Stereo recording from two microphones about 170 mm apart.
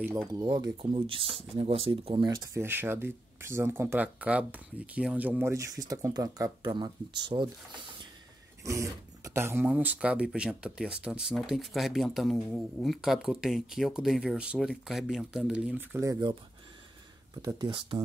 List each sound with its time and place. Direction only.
0.1 s speech: 15° right (ahead or behind)
0.4 s speech: 25° right (ahead or behind)
8.6 s speech: 20° right (ahead or behind)
16.0 s speech: 20° right (ahead or behind)
17.4 s speech: 25° right (ahead or behind)